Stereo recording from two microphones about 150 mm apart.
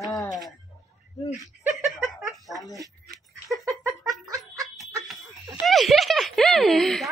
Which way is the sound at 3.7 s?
25° right (ahead or behind).